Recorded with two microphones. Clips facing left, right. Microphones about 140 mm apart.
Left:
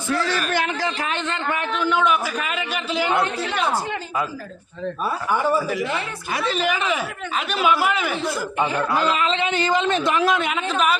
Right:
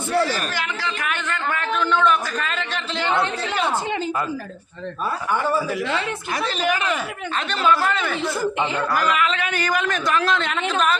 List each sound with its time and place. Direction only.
0.5 s a woman's voice: 45° left (ahead or behind)
1.0 s a man's voice: 25° left (ahead or behind); by 3.6 s centre (ahead or behind)
5.3 s a man's voice: 10° left (ahead or behind)
5.6 s a man's voice: centre (ahead or behind)
9.0 s a man's voice: 30° left (ahead or behind); by 10.9 s 5° left (ahead or behind)